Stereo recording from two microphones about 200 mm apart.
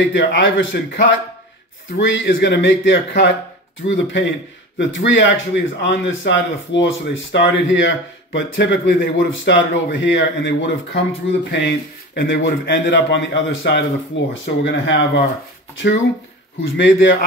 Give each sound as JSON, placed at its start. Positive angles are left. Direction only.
{"t": 0.0, "sound": "speech", "side_deg": 65}
{"t": 16.6, "sound": "speech", "side_deg": 65}